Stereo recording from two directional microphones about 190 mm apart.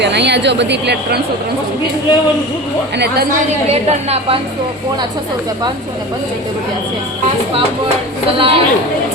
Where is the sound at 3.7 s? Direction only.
35° right (ahead or behind).